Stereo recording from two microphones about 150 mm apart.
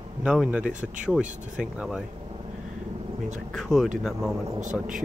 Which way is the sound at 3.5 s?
Centre (ahead or behind).